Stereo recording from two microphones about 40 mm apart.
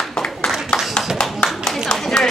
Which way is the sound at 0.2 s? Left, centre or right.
Centre.